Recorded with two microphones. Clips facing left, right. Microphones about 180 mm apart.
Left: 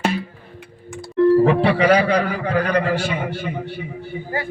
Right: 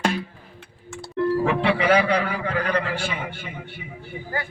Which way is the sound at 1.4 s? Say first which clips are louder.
Left 5 dB; 40° left (ahead or behind).